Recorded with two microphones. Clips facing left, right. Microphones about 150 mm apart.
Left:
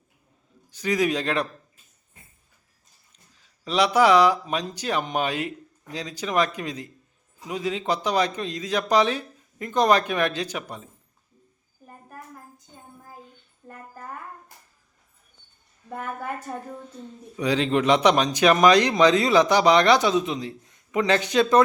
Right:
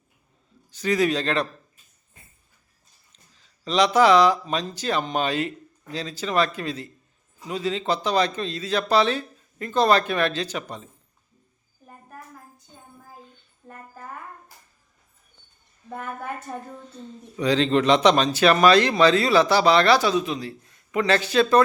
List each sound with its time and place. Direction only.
0.7 s speech: 10° left (ahead or behind)
3.1 s speech: 10° left (ahead or behind)
15.9 s speech: 5° left (ahead or behind)